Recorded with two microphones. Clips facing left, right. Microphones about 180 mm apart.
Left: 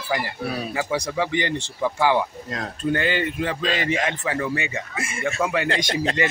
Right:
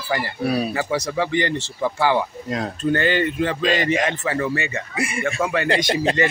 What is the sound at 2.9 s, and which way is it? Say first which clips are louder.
Speech: right 4 dB; 10° left (ahead or behind).